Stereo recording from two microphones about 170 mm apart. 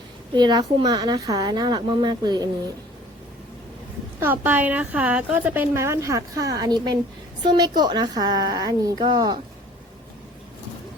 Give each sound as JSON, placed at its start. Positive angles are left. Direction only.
{"t": 0.3, "sound": "a woman's voice", "side_deg": -25}
{"t": 4.2, "sound": "a woman's voice", "side_deg": -10}